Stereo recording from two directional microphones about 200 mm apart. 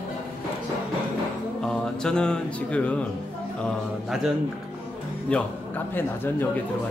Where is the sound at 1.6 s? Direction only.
5° left (ahead or behind).